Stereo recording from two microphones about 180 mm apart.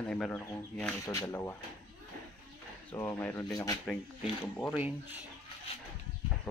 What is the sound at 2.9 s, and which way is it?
Speech, 15° left (ahead or behind).